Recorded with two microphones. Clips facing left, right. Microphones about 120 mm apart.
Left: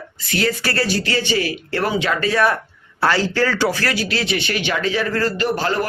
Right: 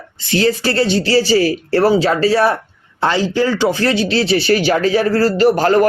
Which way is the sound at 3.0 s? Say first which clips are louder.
Right 3 dB; 20° right (ahead or behind).